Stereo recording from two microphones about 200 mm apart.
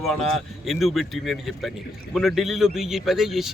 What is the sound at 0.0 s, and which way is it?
A man's voice, centre (ahead or behind).